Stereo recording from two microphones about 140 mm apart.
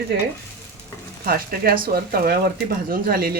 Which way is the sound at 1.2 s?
90° right.